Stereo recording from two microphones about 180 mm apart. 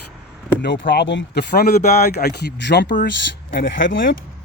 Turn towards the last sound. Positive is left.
turn(degrees=90)